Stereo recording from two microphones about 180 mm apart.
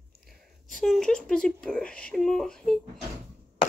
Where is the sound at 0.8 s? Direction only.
Centre (ahead or behind).